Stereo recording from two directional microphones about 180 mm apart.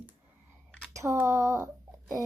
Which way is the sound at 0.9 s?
15° right (ahead or behind).